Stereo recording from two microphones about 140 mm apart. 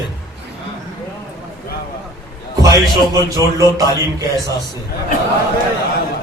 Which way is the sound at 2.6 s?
25° right (ahead or behind).